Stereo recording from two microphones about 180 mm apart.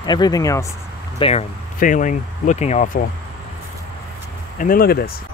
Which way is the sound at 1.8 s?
45° left (ahead or behind).